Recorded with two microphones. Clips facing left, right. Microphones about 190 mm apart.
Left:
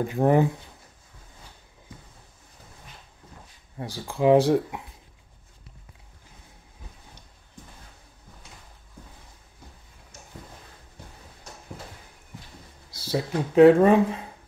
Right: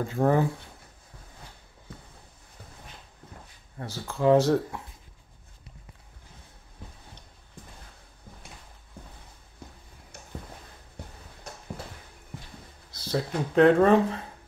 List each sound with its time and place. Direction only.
0.0 s speech: 15° left (ahead or behind)
3.7 s speech: 15° left (ahead or behind)
12.9 s speech: 10° left (ahead or behind)